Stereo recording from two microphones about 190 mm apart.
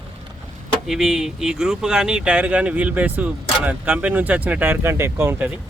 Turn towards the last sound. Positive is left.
turn(degrees=-10)  # may be behind; listen again after turning